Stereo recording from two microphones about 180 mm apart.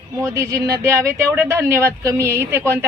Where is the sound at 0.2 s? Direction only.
15° right (ahead or behind).